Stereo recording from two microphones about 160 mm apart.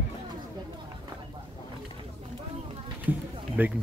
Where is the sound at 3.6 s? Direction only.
10° right (ahead or behind).